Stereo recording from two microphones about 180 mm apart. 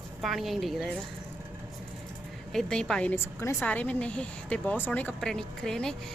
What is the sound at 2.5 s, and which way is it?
A woman's voice, 5° left (ahead or behind).